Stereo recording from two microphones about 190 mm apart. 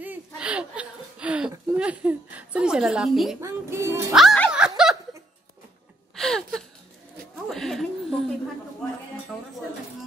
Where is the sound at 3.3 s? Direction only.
15° right (ahead or behind).